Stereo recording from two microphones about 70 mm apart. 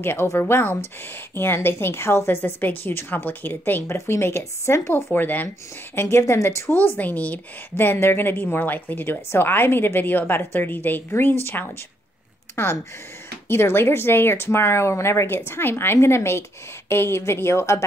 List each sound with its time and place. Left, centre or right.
0.0 s a woman's voice: left
3.8 s a woman's voice: left
5.1 s a woman's voice: left
5.9 s a woman's voice: left
7.7 s a woman's voice: left